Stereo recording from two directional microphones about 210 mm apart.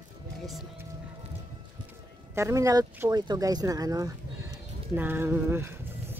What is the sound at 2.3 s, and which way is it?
Speech, 15° right (ahead or behind).